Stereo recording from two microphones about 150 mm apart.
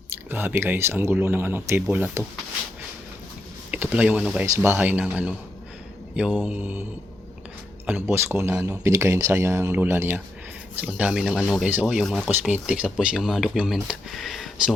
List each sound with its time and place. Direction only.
0.3 s speech: 15° right (ahead or behind)
3.7 s speech: 10° right (ahead or behind)
4.4 s speech: 20° right (ahead or behind)
6.4 s speech: 10° right (ahead or behind)
7.9 s speech: 15° right (ahead or behind); by 12.3 s centre (ahead or behind)
12.3 s speech: 10° right (ahead or behind)